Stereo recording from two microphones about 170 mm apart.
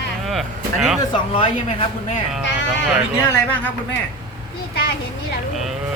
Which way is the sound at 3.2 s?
15° left (ahead or behind).